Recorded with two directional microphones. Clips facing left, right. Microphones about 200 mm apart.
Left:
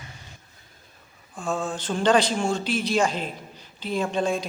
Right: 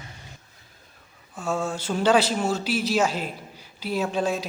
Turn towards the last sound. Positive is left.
turn(degrees=-5)  # may be behind; listen again after turning